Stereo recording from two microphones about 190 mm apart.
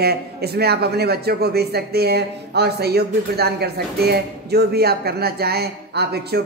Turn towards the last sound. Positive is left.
turn(degrees=-55)  # may be behind; listen again after turning